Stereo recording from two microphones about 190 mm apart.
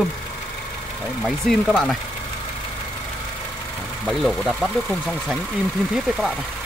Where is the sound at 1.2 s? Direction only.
Centre (ahead or behind).